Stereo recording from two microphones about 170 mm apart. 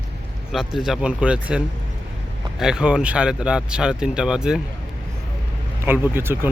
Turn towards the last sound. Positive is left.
turn(degrees=-15)  # may be behind; listen again after turning